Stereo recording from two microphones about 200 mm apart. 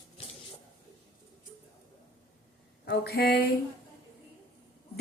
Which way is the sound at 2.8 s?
50° left (ahead or behind).